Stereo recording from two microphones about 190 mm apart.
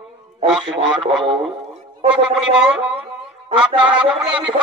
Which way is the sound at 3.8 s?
5° right (ahead or behind).